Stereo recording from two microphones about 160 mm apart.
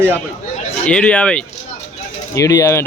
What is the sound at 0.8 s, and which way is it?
Speech, 5° left (ahead or behind).